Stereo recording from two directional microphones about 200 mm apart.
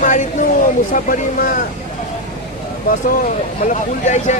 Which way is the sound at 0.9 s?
45° left (ahead or behind).